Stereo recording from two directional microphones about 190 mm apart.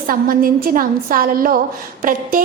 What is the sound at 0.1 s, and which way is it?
A woman's voice, 50° right (ahead or behind).